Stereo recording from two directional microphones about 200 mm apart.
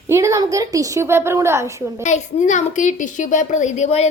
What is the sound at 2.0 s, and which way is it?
A woman's voice, 35° left (ahead or behind).